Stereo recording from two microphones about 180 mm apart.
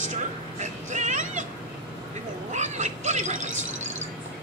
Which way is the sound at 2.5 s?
40° right (ahead or behind).